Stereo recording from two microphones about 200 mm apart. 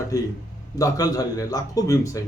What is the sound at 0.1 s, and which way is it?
A man's voice, 15° left (ahead or behind).